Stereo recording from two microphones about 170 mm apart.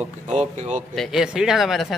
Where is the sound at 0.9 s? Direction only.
Centre (ahead or behind).